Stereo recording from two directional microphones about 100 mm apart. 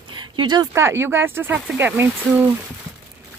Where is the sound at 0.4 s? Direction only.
45° right (ahead or behind).